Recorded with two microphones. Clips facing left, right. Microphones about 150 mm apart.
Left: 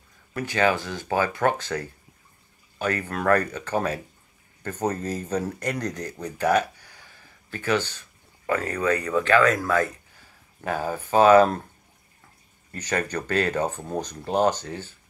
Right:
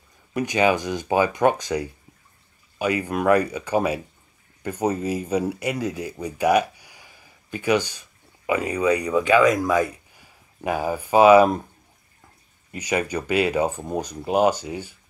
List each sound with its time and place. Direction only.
0.3 s speech: 15° right (ahead or behind)
12.7 s speech: 10° right (ahead or behind)